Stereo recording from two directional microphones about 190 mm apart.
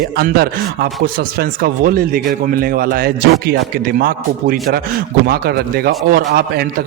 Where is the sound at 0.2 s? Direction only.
55° right (ahead or behind).